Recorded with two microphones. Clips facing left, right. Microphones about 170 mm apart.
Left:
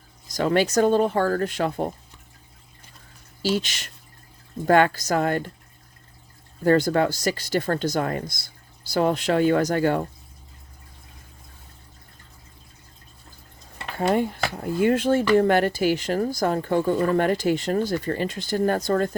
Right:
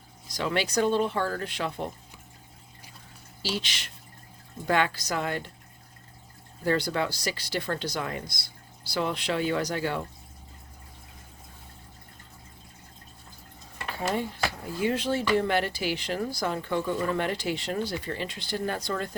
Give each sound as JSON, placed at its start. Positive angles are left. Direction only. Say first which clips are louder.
{"t": 0.3, "sound": "speech", "louder": "left 8 dB", "side_deg": 45}
{"t": 3.4, "sound": "speech", "louder": "left 8 dB", "side_deg": 45}
{"t": 6.7, "sound": "speech", "louder": "left 8 dB", "side_deg": 50}
{"t": 14.1, "sound": "speech", "louder": "left 7 dB", "side_deg": 55}